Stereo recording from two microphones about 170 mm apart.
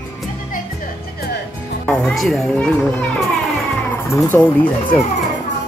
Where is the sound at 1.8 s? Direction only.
Centre (ahead or behind).